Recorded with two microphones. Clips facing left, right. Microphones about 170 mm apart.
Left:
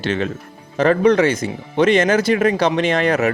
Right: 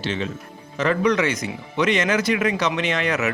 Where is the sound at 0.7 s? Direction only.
35° left (ahead or behind).